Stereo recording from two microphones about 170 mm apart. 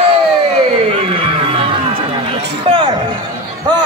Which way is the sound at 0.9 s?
35° right (ahead or behind).